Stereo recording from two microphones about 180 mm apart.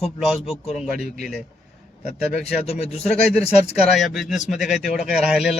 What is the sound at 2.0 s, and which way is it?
Speech, 40° left (ahead or behind).